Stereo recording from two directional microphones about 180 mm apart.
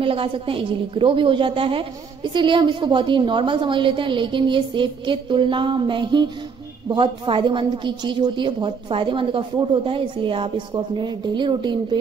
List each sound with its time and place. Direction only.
0.0 s a woman's voice: 30° right (ahead or behind)